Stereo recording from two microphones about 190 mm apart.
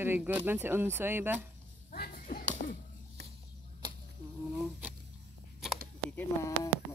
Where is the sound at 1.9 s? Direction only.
50° left (ahead or behind).